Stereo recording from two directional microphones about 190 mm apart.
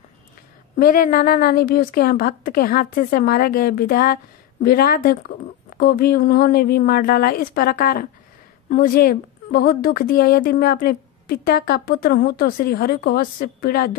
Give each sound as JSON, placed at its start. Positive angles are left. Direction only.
{"t": 0.7, "sound": "a woman's voice", "side_deg": 50}